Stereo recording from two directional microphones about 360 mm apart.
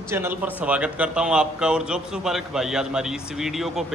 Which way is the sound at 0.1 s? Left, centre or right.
Centre.